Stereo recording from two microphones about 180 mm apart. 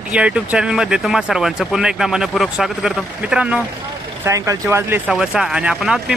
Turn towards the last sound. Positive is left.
turn(degrees=-5)  # may be behind; listen again after turning